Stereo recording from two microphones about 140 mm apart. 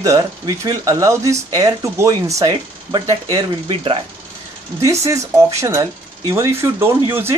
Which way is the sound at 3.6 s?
40° right (ahead or behind).